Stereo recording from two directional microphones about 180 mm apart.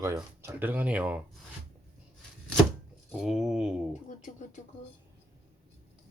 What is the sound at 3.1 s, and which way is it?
Speech, 5° right (ahead or behind).